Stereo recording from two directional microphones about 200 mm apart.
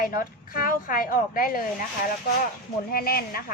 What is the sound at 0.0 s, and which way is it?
A woman's voice, 45° left (ahead or behind).